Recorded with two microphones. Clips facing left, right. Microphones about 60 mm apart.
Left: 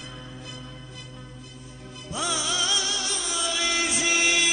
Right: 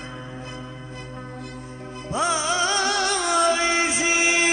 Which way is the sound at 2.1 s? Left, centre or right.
Right.